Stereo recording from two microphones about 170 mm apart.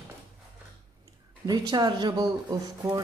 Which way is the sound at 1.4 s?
25° right (ahead or behind).